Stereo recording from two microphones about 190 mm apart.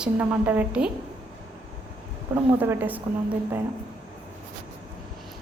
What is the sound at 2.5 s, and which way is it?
Speech, 10° right (ahead or behind).